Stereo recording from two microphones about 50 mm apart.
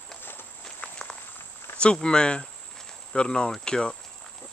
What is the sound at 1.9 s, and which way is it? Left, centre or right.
Cricket, centre.